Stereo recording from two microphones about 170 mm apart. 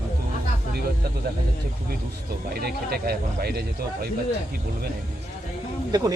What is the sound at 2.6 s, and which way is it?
Speech, 65° right (ahead or behind).